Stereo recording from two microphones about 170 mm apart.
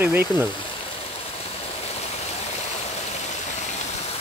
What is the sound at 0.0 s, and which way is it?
Speech, 10° right (ahead or behind).